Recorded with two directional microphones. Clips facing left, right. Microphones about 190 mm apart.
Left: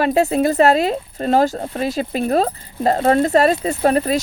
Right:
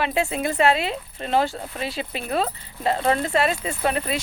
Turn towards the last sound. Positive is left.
turn(degrees=40)  # may be behind; listen again after turning